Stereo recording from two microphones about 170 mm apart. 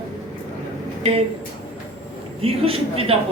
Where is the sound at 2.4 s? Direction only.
35° right (ahead or behind).